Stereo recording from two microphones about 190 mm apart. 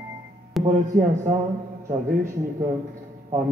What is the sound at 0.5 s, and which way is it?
Music, centre (ahead or behind).